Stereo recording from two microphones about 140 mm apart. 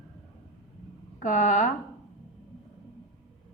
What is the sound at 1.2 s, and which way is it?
Speech, 65° left (ahead or behind).